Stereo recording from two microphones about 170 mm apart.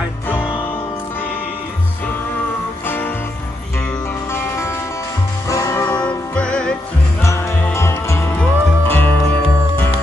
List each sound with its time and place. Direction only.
4.3 s music: 15° left (ahead or behind)
6.0 s music: 5° left (ahead or behind)
7.2 s music: 15° left (ahead or behind)